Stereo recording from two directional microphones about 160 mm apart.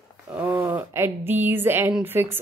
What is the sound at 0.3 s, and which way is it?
A woman's voice, 10° right (ahead or behind).